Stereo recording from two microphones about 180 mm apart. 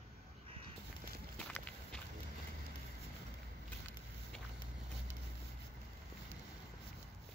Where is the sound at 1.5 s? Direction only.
5° left (ahead or behind).